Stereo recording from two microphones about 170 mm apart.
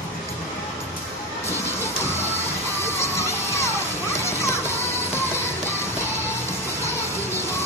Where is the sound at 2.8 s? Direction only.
15° left (ahead or behind).